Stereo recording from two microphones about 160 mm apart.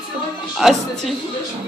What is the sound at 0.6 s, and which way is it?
Speech, centre (ahead or behind).